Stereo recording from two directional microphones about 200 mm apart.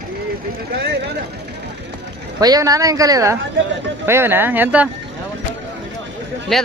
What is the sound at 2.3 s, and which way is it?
Speech, 20° right (ahead or behind).